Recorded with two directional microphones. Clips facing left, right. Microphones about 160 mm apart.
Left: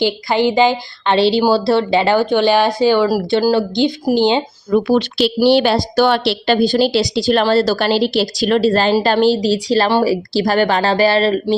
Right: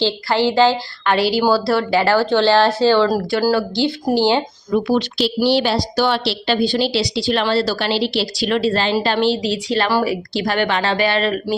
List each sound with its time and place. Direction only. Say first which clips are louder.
0.0 s a woman's voice: left 2 dB; 15° left (ahead or behind)
4.7 s a woman's voice: left 3 dB; 60° left (ahead or behind); by 11.5 s 35° left (ahead or behind)